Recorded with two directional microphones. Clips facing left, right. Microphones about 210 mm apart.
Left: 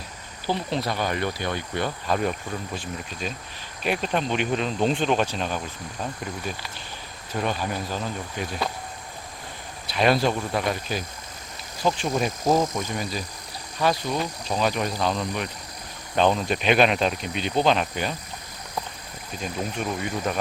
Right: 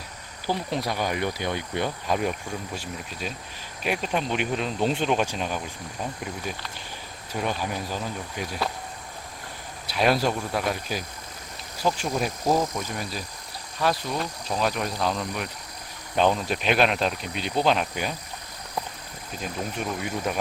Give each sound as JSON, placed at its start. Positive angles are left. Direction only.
{"t": 0.4, "sound": "speech", "side_deg": -10}
{"t": 7.3, "sound": "speech", "side_deg": -10}
{"t": 9.8, "sound": "speech", "side_deg": -5}
{"t": 20.0, "sound": "speech", "side_deg": -5}